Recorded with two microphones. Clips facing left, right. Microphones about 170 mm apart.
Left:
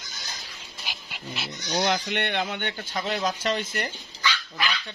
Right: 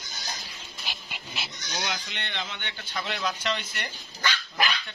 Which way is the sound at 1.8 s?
55° left (ahead or behind).